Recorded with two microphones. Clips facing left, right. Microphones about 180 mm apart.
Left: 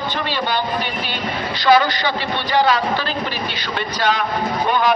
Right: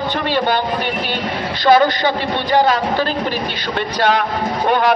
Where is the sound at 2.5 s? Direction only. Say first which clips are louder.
Right 2 dB; 45° right (ahead or behind).